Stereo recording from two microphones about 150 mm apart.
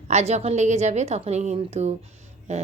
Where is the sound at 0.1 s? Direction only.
50° right (ahead or behind).